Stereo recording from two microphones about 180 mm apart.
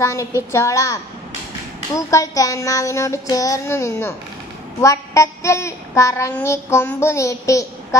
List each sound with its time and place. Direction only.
0.0 s a child's voice: 15° left (ahead or behind)